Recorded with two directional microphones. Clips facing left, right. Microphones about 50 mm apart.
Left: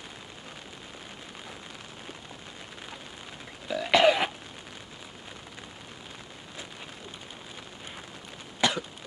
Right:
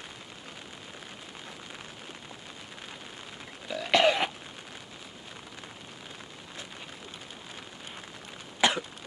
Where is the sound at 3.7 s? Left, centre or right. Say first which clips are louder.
Left 2 dB; centre.